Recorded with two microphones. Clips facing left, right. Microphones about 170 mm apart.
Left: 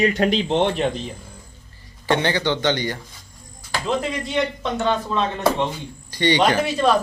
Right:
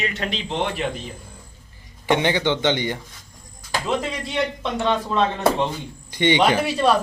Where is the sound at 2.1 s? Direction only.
15° right (ahead or behind).